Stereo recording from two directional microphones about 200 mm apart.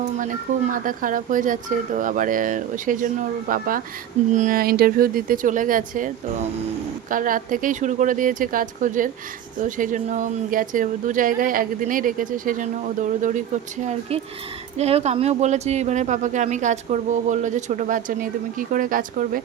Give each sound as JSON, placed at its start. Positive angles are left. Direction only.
{"t": 0.2, "sound": "speech", "side_deg": -40}